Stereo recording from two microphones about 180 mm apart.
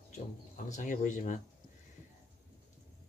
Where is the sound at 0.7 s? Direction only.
45° left (ahead or behind).